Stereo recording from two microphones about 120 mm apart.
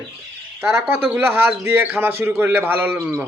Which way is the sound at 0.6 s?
20° right (ahead or behind).